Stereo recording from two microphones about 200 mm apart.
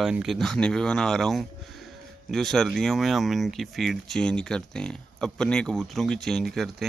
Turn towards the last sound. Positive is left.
turn(degrees=0)  # may be behind; listen again after turning